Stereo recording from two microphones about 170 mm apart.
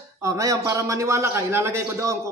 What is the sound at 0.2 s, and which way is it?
A man's voice, 20° right (ahead or behind).